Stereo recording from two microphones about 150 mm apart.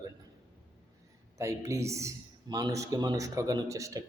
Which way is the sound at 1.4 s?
20° right (ahead or behind).